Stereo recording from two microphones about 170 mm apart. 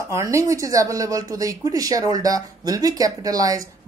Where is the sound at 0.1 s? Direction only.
15° right (ahead or behind).